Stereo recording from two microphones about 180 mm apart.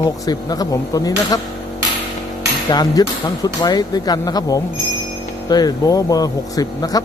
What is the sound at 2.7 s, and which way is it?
Speech, 20° left (ahead or behind).